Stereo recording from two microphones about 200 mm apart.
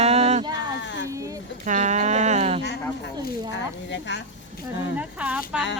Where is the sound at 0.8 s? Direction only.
65° left (ahead or behind).